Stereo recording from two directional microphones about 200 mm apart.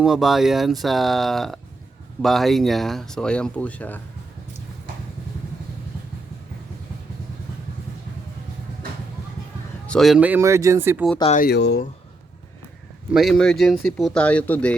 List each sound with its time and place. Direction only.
0.0 s speech: centre (ahead or behind)
9.8 s speech: 5° left (ahead or behind)
11.3 s speech: 55° left (ahead or behind)
13.1 s speech: centre (ahead or behind)